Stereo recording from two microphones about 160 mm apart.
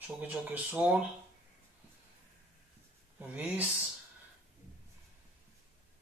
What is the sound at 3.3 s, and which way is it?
Speech, 10° right (ahead or behind).